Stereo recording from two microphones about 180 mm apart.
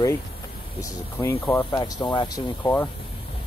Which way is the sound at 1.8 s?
25° left (ahead or behind).